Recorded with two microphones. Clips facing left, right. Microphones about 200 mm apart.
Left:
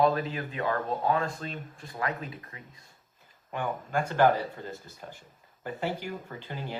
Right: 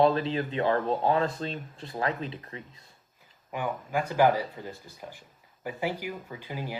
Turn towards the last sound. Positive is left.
turn(degrees=-10)  # may be behind; listen again after turning